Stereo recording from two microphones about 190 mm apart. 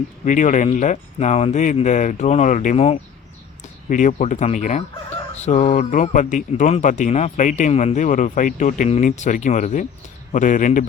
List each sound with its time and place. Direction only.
0.3 s a man's voice: 40° left (ahead or behind)